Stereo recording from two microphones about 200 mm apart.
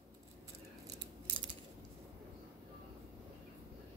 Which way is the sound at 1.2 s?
25° right (ahead or behind).